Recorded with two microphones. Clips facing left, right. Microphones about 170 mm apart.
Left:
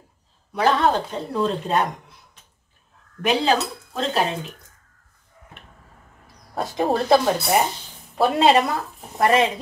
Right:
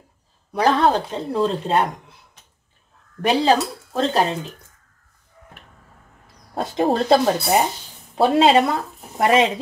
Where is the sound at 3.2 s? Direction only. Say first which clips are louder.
Right 3 dB; 35° right (ahead or behind).